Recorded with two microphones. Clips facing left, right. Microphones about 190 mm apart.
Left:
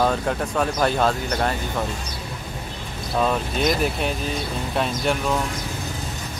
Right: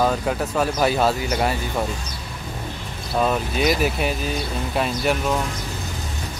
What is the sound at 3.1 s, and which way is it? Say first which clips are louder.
Speech: right 1 dB; 5° right (ahead or behind).